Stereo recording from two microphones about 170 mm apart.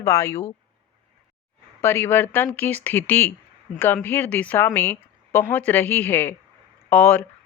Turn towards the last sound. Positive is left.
turn(degrees=10)  # may be behind; listen again after turning